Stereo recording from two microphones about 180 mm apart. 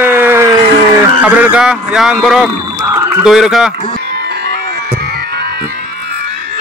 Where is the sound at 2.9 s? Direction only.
15° right (ahead or behind).